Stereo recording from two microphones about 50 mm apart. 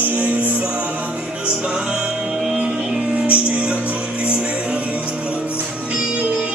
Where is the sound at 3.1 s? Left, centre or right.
Right.